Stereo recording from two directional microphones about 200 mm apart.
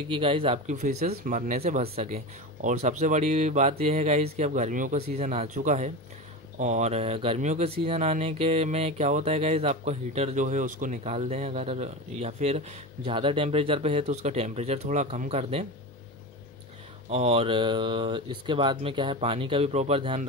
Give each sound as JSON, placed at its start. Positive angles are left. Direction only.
{"t": 0.1, "sound": "speech", "side_deg": -25}
{"t": 17.1, "sound": "speech", "side_deg": -30}